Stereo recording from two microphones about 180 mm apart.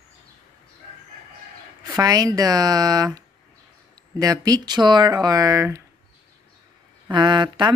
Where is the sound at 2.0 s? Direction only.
20° right (ahead or behind).